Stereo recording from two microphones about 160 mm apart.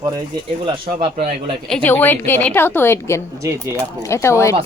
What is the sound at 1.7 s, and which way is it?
A woman's voice, 10° left (ahead or behind).